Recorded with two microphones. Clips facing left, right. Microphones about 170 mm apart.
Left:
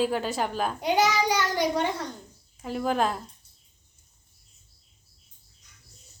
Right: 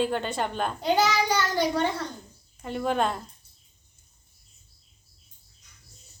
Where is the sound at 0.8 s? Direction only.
15° left (ahead or behind).